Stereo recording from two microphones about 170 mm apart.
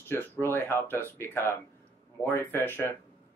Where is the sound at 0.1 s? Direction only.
15° left (ahead or behind).